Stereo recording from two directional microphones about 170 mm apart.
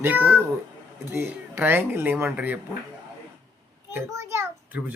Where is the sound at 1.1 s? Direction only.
10° right (ahead or behind).